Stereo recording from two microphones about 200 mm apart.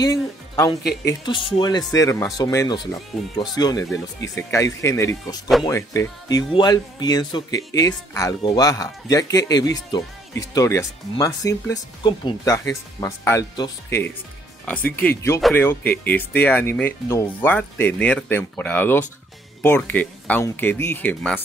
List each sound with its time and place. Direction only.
0.0 s speech: 20° left (ahead or behind)